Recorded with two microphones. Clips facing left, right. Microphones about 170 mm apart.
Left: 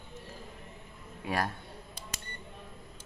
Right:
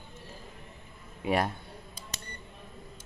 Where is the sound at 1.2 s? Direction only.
20° right (ahead or behind).